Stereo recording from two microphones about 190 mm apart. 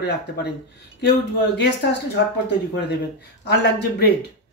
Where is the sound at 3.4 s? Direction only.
60° left (ahead or behind).